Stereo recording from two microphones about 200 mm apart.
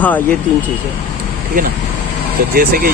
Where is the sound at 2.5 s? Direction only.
45° right (ahead or behind).